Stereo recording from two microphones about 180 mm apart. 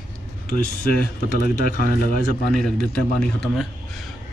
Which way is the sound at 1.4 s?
50° left (ahead or behind).